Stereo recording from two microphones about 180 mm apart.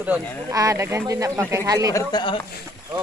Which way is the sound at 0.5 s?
20° right (ahead or behind).